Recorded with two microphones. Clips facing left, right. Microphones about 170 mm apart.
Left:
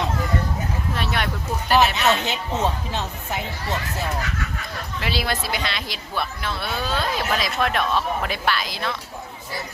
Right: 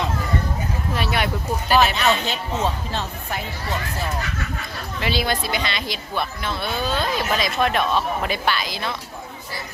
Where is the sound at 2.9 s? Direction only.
20° left (ahead or behind).